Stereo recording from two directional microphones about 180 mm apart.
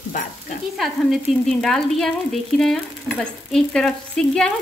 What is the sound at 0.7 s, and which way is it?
Speech, centre (ahead or behind).